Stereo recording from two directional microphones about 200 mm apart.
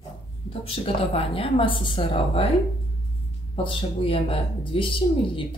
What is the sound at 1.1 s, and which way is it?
Speech, 30° left (ahead or behind).